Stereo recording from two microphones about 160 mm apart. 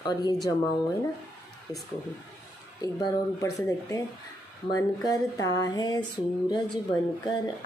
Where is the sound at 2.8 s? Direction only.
20° left (ahead or behind).